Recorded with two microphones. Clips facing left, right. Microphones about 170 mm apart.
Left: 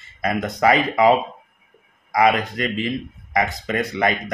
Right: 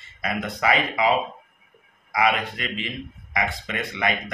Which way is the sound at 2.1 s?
40° left (ahead or behind).